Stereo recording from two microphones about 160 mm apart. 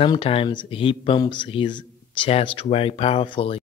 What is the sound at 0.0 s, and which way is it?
Speech, 35° left (ahead or behind).